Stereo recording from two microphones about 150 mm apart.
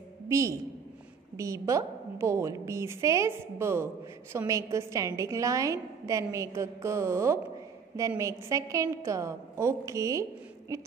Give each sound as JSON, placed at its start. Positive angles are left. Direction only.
{"t": 0.3, "sound": "a woman's voice", "side_deg": -20}